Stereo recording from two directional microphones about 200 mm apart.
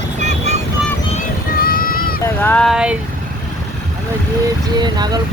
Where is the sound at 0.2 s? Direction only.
35° right (ahead or behind).